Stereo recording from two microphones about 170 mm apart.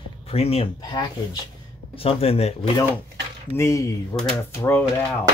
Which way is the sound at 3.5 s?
20° left (ahead or behind).